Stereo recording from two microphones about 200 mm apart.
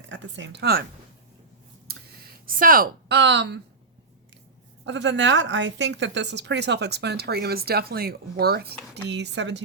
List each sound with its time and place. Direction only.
0.1 s speech: 65° right (ahead or behind)
1.9 s a sound: 45° right (ahead or behind)
4.9 s a woman's voice: 65° right (ahead or behind)